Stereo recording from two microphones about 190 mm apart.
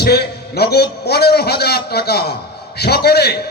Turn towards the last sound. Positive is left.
turn(degrees=60)  # may be behind; listen again after turning